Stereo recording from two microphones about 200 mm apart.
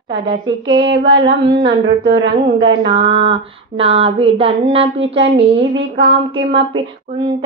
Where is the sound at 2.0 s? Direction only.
70° right (ahead or behind).